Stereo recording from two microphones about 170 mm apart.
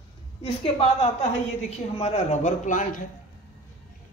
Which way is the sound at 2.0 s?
40° left (ahead or behind).